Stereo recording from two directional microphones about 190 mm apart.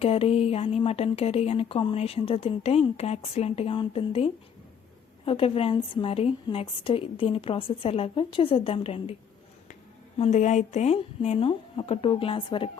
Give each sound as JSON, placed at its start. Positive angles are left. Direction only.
{"t": 0.0, "sound": "a woman's voice", "side_deg": 30}
{"t": 10.2, "sound": "speech", "side_deg": 35}